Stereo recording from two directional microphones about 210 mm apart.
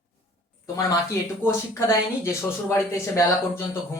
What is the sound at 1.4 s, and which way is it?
Speech, 10° left (ahead or behind).